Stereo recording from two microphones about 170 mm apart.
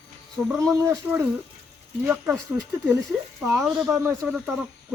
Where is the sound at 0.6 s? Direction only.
20° right (ahead or behind).